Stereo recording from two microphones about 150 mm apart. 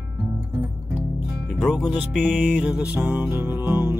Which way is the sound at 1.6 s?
Centre (ahead or behind).